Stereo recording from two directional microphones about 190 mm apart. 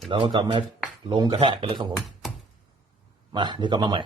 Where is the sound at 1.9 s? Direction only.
Centre (ahead or behind).